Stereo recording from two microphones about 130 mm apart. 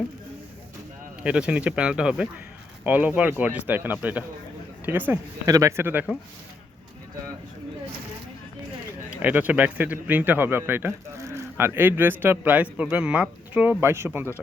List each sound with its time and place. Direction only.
1.2 s speech: 10° right (ahead or behind)
5.5 s a man's voice: 25° right (ahead or behind)
9.0 s a man's voice: 10° right (ahead or behind)